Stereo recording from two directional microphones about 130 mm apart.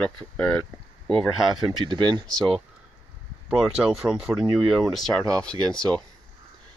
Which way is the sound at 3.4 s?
5° right (ahead or behind).